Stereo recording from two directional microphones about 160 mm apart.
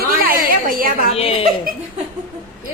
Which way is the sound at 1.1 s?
35° left (ahead or behind).